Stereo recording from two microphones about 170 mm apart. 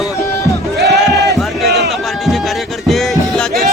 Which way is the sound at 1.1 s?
20° left (ahead or behind).